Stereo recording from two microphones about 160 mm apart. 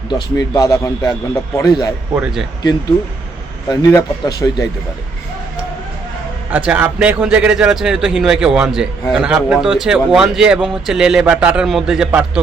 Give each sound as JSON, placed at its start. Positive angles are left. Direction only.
{"t": 0.1, "sound": "speech", "side_deg": 25}
{"t": 2.1, "sound": "a man's voice", "side_deg": -5}
{"t": 3.7, "sound": "speech", "side_deg": 25}
{"t": 6.5, "sound": "a man's voice", "side_deg": -10}